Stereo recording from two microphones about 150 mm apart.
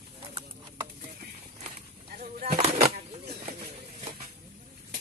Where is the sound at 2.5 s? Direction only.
45° right (ahead or behind).